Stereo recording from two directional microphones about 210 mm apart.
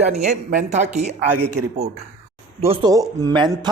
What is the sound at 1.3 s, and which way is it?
Speech, 90° right.